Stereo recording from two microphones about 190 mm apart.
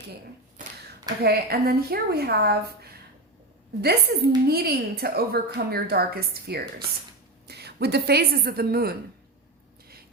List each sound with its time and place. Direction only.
1.2 s a woman's voice: 55° right (ahead or behind)